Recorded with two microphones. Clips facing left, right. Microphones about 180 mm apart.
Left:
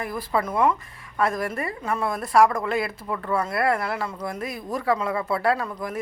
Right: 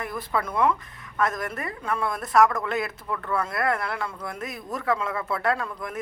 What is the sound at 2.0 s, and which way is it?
Speech, 5° left (ahead or behind).